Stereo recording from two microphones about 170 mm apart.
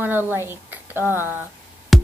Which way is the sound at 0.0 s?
10° right (ahead or behind).